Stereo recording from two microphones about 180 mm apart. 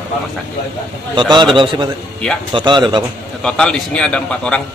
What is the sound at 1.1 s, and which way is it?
Speech, 25° right (ahead or behind).